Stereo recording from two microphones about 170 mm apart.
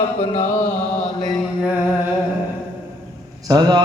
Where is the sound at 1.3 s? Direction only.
5° right (ahead or behind).